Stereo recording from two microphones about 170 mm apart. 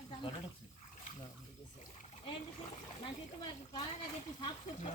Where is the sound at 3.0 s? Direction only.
30° left (ahead or behind).